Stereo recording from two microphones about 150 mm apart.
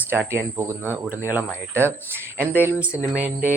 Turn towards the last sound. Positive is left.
turn(degrees=-10)  # may be behind; listen again after turning